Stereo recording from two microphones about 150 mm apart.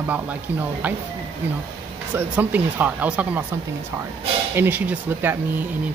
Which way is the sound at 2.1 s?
10° right (ahead or behind).